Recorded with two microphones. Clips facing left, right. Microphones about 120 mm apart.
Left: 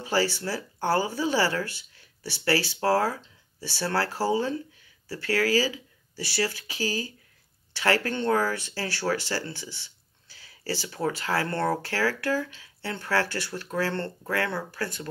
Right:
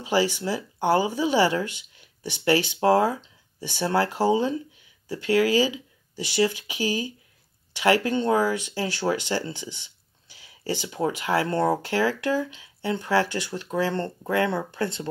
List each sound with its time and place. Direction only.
0.0 s speech: 15° right (ahead or behind)